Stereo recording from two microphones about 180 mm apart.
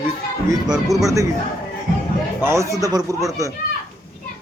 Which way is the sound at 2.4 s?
15° right (ahead or behind).